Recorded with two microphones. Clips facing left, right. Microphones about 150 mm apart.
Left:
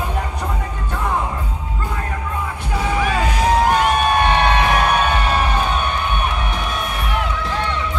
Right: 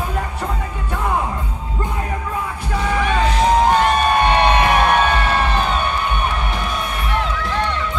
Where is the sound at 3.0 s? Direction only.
5° left (ahead or behind).